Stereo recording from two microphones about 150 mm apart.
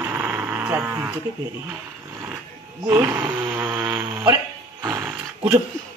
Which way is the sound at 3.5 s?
10° right (ahead or behind).